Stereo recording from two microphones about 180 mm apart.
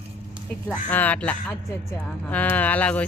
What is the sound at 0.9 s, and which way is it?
Speech, 10° left (ahead or behind).